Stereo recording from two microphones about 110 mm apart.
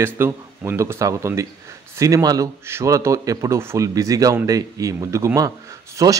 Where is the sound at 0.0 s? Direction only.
20° right (ahead or behind).